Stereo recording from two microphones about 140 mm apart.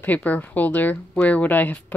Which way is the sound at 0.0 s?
10° left (ahead or behind).